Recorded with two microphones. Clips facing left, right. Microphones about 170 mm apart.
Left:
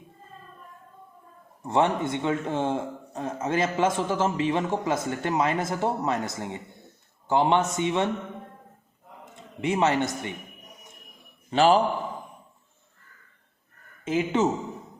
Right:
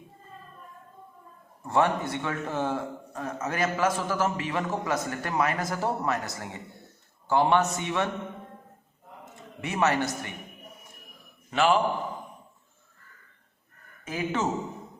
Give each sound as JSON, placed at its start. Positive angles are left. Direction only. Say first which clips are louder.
{"t": 1.6, "sound": "a man's voice", "louder": "left 1 dB", "side_deg": 20}
{"t": 9.3, "sound": "a man's voice", "louder": "left 7 dB", "side_deg": 25}
{"t": 11.5, "sound": "a man's voice", "louder": "left 4 dB", "side_deg": 35}
{"t": 14.0, "sound": "speech", "louder": "left 5 dB", "side_deg": 20}